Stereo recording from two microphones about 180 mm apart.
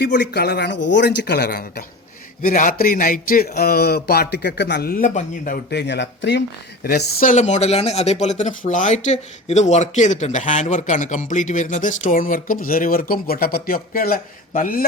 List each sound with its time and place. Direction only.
0.0 s speech: 65° left (ahead or behind); by 5.5 s 50° left (ahead or behind)
5.7 s speech: 70° left (ahead or behind)
6.8 s speech: 55° left (ahead or behind)